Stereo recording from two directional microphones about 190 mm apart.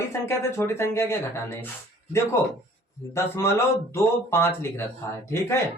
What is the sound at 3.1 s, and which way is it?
Speech, 15° left (ahead or behind).